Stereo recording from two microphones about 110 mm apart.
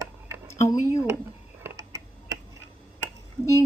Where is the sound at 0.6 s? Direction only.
30° left (ahead or behind).